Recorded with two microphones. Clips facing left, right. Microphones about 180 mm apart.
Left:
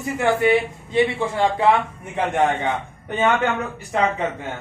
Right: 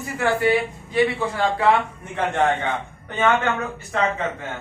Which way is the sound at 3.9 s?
15° left (ahead or behind).